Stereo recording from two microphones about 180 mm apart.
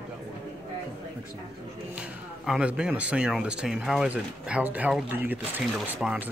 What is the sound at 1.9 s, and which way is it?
Speech, 5° right (ahead or behind).